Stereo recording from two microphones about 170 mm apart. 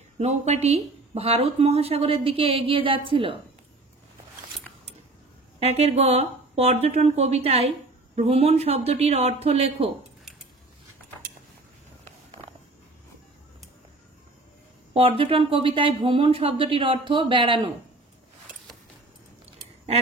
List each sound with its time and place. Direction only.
0.2 s speech: 40° right (ahead or behind)
5.6 s speech: 40° right (ahead or behind)
15.0 s speech: 30° right (ahead or behind)